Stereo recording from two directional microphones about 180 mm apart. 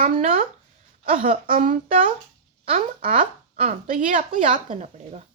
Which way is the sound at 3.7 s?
45° right (ahead or behind).